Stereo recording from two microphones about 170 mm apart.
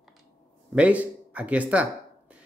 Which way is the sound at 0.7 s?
10° right (ahead or behind).